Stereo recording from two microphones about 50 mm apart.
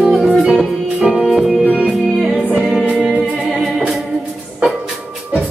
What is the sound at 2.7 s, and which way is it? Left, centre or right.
Music, centre.